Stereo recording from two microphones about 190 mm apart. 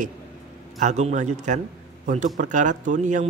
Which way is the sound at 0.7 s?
35° right (ahead or behind).